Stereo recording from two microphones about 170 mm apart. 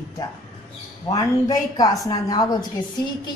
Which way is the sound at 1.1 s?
20° left (ahead or behind).